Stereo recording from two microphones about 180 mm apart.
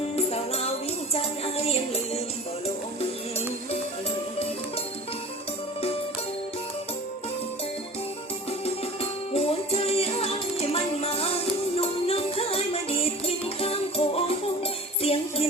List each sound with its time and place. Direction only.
0.2 s music: 35° left (ahead or behind)
8.4 s music: 35° left (ahead or behind)